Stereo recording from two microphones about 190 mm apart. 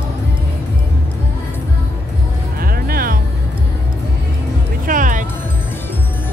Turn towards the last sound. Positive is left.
turn(degrees=-45)  # may be behind; listen again after turning